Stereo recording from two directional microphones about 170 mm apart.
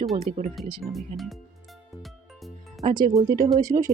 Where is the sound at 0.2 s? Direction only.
45° right (ahead or behind).